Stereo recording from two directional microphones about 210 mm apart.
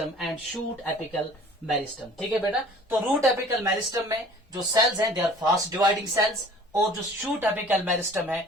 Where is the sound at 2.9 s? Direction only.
5° right (ahead or behind).